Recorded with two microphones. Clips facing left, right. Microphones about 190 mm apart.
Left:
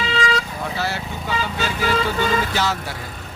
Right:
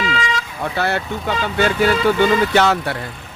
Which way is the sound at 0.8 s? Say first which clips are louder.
Right 9 dB; 60° right (ahead or behind).